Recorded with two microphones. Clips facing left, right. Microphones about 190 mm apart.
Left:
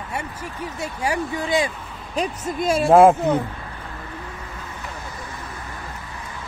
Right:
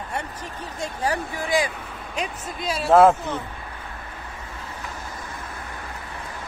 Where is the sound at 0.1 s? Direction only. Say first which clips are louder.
Left 2 dB; 10° left (ahead or behind).